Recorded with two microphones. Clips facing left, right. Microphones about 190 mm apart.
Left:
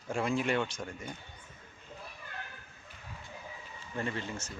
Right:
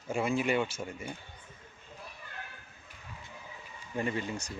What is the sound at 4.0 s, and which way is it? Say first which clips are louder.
Speech: right 3 dB; 15° right (ahead or behind).